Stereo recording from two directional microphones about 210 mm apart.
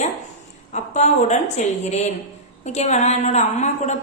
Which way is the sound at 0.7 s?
35° left (ahead or behind).